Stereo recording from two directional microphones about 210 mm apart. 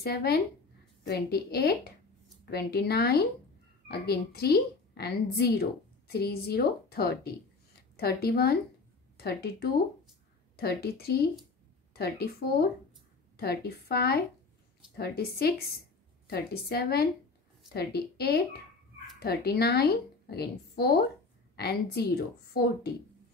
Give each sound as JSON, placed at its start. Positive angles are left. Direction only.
{"t": 0.0, "sound": "a woman's voice", "side_deg": 50}